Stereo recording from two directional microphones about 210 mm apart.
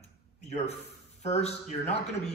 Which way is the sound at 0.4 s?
30° left (ahead or behind).